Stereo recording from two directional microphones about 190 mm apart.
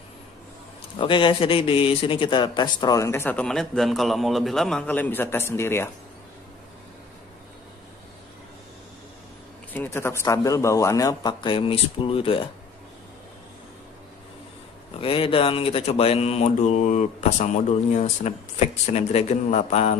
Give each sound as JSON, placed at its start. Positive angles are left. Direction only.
{"t": 0.9, "sound": "speech", "side_deg": 25}
{"t": 9.8, "sound": "speech", "side_deg": 10}
{"t": 15.0, "sound": "speech", "side_deg": 30}